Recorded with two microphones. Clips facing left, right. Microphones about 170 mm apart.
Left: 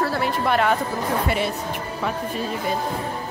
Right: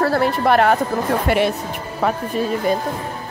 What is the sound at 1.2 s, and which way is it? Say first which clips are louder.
Speech: right 6 dB; 65° right (ahead or behind).